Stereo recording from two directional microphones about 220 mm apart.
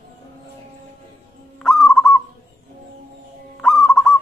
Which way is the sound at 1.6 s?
Centre (ahead or behind).